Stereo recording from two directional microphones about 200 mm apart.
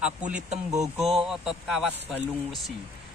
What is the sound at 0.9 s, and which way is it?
Speech, centre (ahead or behind).